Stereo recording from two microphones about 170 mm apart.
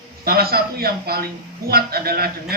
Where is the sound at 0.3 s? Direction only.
65° right (ahead or behind).